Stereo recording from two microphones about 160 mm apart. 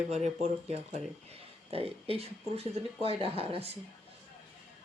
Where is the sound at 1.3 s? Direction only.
35° right (ahead or behind).